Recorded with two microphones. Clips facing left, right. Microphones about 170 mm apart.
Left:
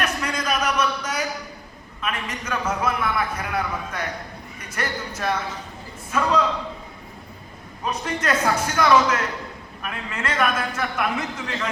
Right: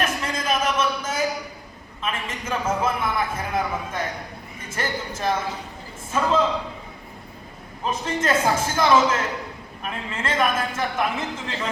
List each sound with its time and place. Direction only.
0.0 s a sound: 25° right (ahead or behind)
2.1 s a man's voice: 25° right (ahead or behind)
7.9 s a man's voice: 25° right (ahead or behind)